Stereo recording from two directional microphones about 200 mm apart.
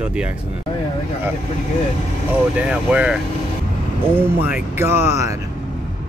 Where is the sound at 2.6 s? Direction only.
5° right (ahead or behind).